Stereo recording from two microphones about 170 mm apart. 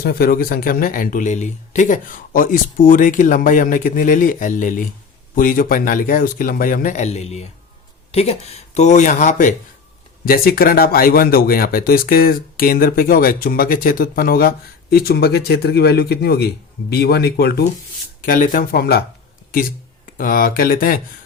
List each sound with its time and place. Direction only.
0.0 s speech: 60° left (ahead or behind)
10.2 s speech: 60° left (ahead or behind)
18.2 s speech: 55° left (ahead or behind)
20.1 s speech: 55° left (ahead or behind)